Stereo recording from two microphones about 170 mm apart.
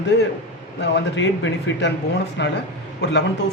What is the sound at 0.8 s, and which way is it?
Speech, 90° left.